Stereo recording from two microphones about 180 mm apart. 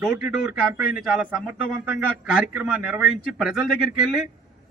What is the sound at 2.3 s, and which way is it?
A man's voice, 5° right (ahead or behind).